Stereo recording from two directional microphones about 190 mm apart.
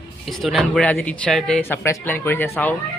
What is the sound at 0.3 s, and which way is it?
Speech, centre (ahead or behind).